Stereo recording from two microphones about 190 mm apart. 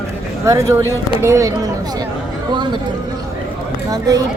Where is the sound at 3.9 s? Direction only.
20° right (ahead or behind).